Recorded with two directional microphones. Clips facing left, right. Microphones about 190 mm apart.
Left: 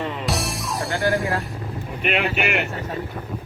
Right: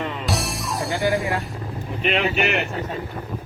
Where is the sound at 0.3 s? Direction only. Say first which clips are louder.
Even; centre (ahead or behind).